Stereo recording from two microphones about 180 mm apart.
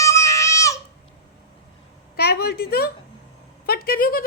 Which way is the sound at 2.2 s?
60° left (ahead or behind).